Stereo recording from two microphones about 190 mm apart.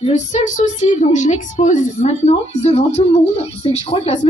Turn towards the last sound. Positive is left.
turn(degrees=35)  # may be behind; listen again after turning